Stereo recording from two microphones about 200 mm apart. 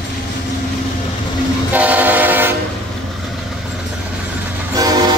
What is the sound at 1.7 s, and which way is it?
Train, 10° right (ahead or behind).